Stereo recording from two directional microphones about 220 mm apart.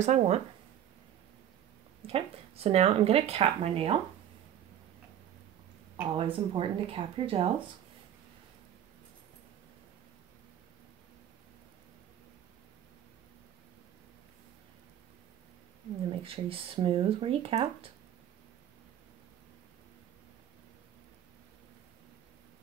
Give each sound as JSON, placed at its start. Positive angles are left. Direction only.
{"t": 0.0, "sound": "speech", "side_deg": -30}
{"t": 2.0, "sound": "speech", "side_deg": -25}
{"t": 6.1, "sound": "speech", "side_deg": -25}
{"t": 16.2, "sound": "speech", "side_deg": -25}